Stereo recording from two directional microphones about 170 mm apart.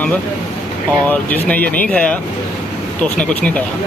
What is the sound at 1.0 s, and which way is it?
Speech, 10° left (ahead or behind).